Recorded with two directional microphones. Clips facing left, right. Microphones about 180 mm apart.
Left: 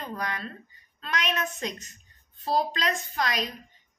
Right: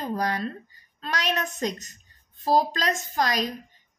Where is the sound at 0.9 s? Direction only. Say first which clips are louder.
Right 2 dB; 40° right (ahead or behind).